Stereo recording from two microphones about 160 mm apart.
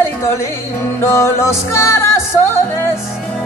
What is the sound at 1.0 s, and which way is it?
Music, 15° left (ahead or behind).